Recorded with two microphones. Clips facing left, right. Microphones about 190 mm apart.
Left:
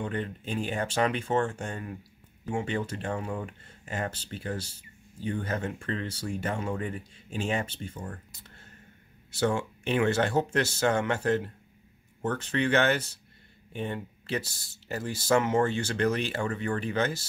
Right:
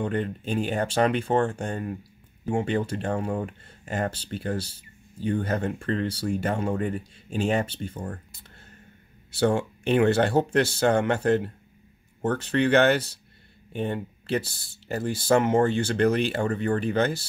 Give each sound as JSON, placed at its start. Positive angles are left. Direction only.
{"t": 0.0, "sound": "speech", "side_deg": -35}
{"t": 9.8, "sound": "speech", "side_deg": -35}
{"t": 12.2, "sound": "speech", "side_deg": -35}
{"t": 12.5, "sound": "speech", "side_deg": -65}
{"t": 13.9, "sound": "speech", "side_deg": -30}